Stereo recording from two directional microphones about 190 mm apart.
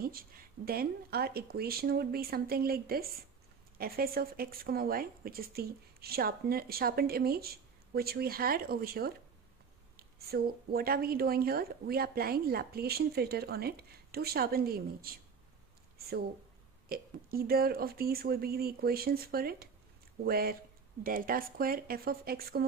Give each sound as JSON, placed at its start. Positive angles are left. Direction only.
{"t": 0.0, "sound": "speech", "side_deg": -50}
{"t": 16.9, "sound": "speech", "side_deg": -50}